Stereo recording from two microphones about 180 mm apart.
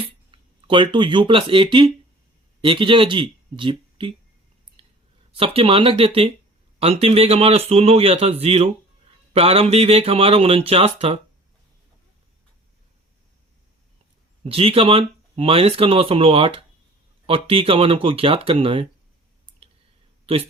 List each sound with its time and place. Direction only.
0.3 s speech: 25° right (ahead or behind)
4.8 s clicking: 30° right (ahead or behind)
5.3 s speech: 30° right (ahead or behind)
14.4 s speech: 30° right (ahead or behind)
20.2 s speech: 30° right (ahead or behind)